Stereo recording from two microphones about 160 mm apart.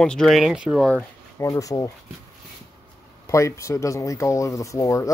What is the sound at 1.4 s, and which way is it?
Speech, 20° left (ahead or behind).